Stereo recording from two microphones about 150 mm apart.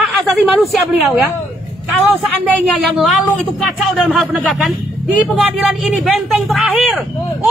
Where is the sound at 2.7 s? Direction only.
Centre (ahead or behind).